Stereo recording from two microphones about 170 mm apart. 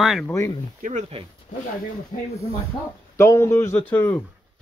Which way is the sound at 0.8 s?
50° right (ahead or behind).